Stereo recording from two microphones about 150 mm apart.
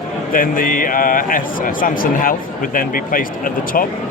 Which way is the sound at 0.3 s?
65° left (ahead or behind).